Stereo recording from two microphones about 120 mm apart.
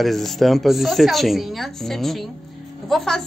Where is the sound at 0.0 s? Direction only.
Centre (ahead or behind).